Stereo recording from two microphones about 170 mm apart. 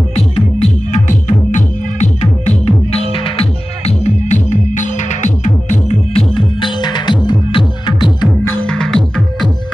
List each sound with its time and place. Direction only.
0.1 s music: 40° left (ahead or behind); by 8.3 s 25° left (ahead or behind)
8.5 s music: 5° left (ahead or behind)